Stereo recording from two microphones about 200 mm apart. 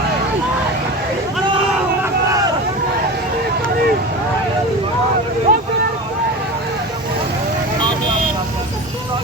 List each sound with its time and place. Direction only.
5.5 s vehicle: 40° right (ahead or behind)